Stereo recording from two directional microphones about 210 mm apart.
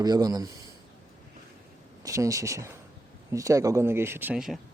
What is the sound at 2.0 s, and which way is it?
Speech, 15° right (ahead or behind).